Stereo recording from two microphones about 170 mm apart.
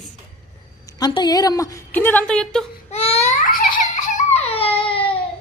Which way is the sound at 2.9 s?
35° left (ahead or behind).